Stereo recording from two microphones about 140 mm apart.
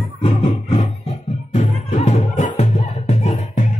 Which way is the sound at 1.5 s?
55° left (ahead or behind).